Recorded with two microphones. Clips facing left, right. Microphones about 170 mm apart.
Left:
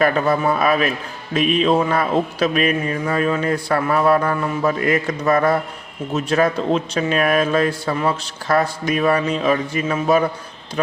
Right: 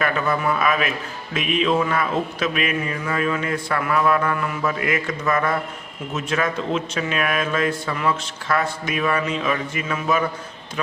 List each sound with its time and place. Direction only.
0.0 s a man's voice: 35° left (ahead or behind)